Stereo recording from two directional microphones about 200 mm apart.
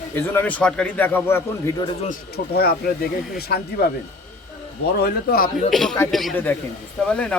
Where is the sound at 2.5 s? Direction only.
50° left (ahead or behind).